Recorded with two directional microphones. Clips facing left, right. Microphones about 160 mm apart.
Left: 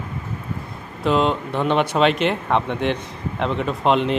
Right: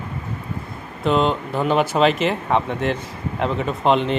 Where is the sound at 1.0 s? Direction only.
Centre (ahead or behind).